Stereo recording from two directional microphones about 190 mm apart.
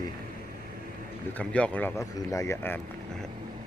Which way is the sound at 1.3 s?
5° left (ahead or behind).